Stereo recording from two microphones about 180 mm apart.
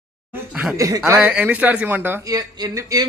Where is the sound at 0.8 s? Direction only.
20° right (ahead or behind).